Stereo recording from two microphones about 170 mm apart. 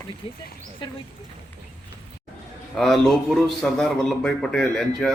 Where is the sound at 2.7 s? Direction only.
Centre (ahead or behind).